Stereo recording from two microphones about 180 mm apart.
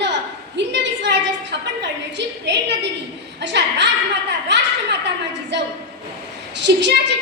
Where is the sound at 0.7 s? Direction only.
75° right (ahead or behind).